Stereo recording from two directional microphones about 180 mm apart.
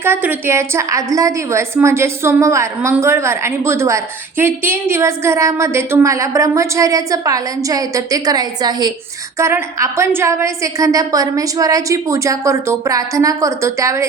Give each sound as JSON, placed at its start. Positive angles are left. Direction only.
{"t": 0.0, "sound": "a woman's voice", "side_deg": -10}